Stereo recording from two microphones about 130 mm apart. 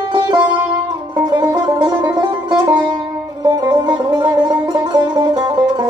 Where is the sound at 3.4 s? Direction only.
30° right (ahead or behind).